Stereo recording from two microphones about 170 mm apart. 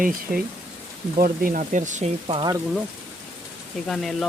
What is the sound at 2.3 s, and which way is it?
Speech, 30° right (ahead or behind).